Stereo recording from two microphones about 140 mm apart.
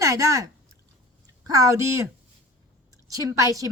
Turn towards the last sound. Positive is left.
turn(degrees=-25)  # may be behind; listen again after turning